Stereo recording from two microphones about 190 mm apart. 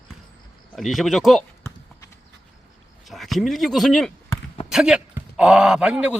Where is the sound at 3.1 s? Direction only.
Centre (ahead or behind).